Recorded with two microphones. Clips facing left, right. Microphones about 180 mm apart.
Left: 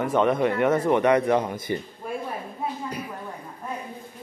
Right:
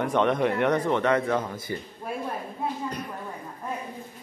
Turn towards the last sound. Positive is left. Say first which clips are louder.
# even
turn(degrees=10)  # may be behind; listen again after turning